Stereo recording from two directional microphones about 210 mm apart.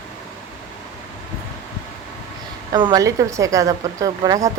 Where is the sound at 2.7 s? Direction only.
20° right (ahead or behind).